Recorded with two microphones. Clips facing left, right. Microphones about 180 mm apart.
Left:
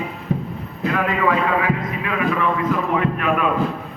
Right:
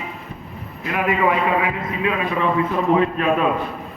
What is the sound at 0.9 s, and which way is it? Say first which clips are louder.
A man's voice: right 1 dB; 20° right (ahead or behind).